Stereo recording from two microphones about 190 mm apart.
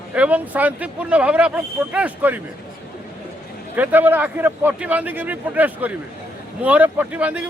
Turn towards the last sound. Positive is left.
turn(degrees=-5)  # may be behind; listen again after turning